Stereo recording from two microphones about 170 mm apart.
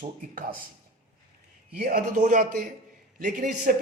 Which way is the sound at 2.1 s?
50° right (ahead or behind).